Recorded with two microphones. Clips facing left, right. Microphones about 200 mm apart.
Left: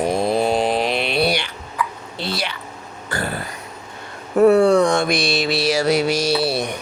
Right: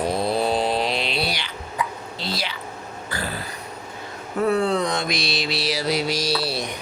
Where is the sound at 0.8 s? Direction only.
55° left (ahead or behind).